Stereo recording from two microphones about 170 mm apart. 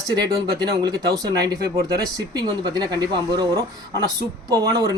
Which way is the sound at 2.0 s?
20° right (ahead or behind).